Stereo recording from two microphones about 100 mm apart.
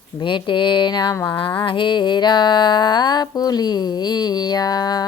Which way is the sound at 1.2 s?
55° left (ahead or behind).